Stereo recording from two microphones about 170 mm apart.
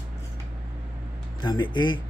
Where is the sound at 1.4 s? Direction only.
25° left (ahead or behind).